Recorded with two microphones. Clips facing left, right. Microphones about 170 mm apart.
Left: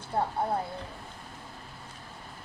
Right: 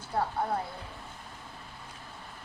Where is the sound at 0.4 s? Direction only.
30° left (ahead or behind).